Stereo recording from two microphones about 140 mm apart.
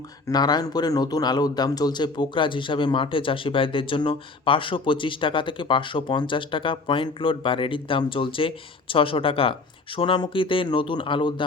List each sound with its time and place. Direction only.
0.3 s speech: 30° left (ahead or behind)